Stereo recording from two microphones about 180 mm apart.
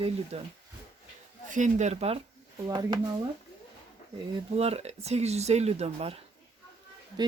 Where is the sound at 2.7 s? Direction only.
20° right (ahead or behind).